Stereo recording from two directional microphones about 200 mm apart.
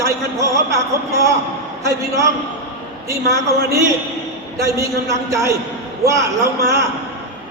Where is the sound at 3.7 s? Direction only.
15° right (ahead or behind).